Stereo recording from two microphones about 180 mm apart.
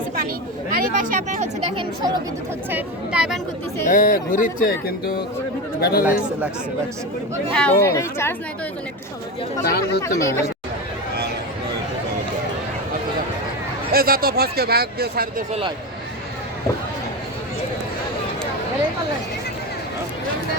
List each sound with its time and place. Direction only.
0.7 s speech: 45° right (ahead or behind)
1.7 s speech: 25° right (ahead or behind)
2.6 s speech: 5° right (ahead or behind)
3.8 s speech: 50° left (ahead or behind)
4.9 s speech: 60° left (ahead or behind)
7.5 s speech: 10° left (ahead or behind)
9.6 s speech: 65° left (ahead or behind)
10.0 s speech: 15° left (ahead or behind)
13.9 s speech: 55° right (ahead or behind)